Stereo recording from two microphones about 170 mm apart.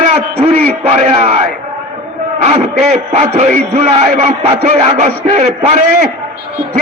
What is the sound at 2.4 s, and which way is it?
A man's voice, 40° right (ahead or behind).